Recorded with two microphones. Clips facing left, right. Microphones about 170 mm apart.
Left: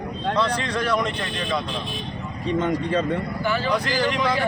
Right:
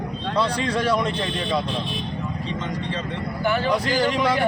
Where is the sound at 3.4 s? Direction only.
50° right (ahead or behind).